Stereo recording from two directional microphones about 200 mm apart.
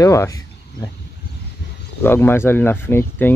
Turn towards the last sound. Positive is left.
turn(degrees=10)  # may be behind; listen again after turning